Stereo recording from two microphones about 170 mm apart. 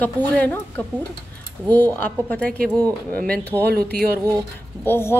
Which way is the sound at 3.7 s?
65° right (ahead or behind).